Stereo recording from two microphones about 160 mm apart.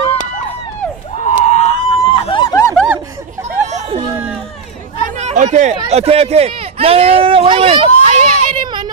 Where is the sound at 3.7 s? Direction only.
45° right (ahead or behind).